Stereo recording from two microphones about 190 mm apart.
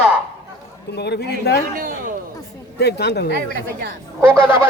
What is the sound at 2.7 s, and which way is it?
Speech, 60° left (ahead or behind).